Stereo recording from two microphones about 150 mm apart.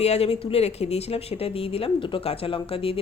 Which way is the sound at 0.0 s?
45° left (ahead or behind).